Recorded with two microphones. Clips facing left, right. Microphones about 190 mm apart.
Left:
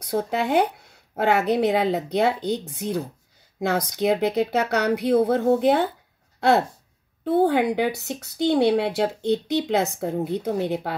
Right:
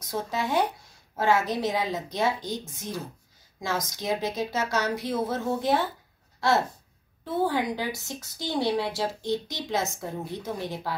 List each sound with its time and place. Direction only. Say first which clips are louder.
0.0 s speech: left 6 dB; 65° left (ahead or behind)
7.2 s speech: left 7 dB; 65° left (ahead or behind)